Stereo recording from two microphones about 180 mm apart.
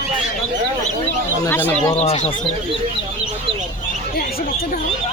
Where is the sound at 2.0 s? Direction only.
35° left (ahead or behind).